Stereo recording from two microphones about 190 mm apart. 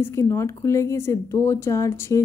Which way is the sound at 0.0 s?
15° left (ahead or behind).